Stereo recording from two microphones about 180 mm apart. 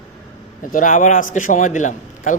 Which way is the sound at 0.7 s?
45° left (ahead or behind).